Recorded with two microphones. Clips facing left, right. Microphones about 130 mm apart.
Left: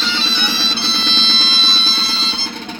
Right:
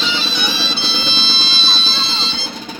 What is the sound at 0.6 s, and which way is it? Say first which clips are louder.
Music: even; 10° right (ahead or behind).